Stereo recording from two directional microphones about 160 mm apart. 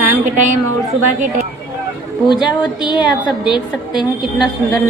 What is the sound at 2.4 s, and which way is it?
A woman's voice, 30° left (ahead or behind).